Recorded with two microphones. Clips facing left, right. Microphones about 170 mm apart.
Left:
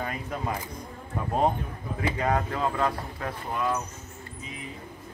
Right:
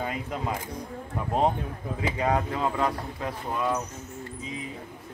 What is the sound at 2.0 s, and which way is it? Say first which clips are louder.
Speech: even; 15° right (ahead or behind).